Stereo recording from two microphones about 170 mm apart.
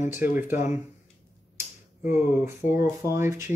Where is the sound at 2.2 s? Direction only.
10° right (ahead or behind).